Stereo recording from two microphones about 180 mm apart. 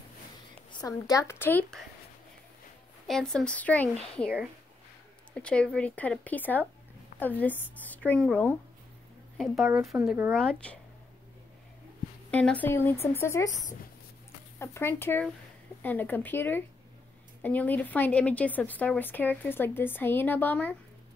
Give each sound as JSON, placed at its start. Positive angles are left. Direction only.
{"t": 0.7, "sound": "a woman's voice", "side_deg": 20}
{"t": 3.1, "sound": "a woman's voice", "side_deg": 5}
{"t": 5.3, "sound": "a woman's voice", "side_deg": 5}
{"t": 9.9, "sound": "speech", "side_deg": -10}
{"t": 10.3, "sound": "a woman's voice", "side_deg": 5}
{"t": 12.3, "sound": "a woman's voice", "side_deg": 10}
{"t": 14.6, "sound": "a woman's voice", "side_deg": 15}